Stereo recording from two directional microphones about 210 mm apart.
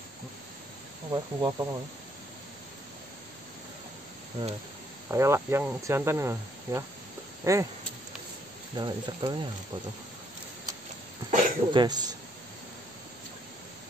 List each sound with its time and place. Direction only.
1.1 s speech: 20° right (ahead or behind)
5.0 s speech: 15° right (ahead or behind)
8.7 s speech: 20° right (ahead or behind)
11.2 s speech: 20° right (ahead or behind)